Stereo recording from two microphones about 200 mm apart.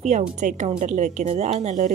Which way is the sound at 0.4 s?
35° right (ahead or behind).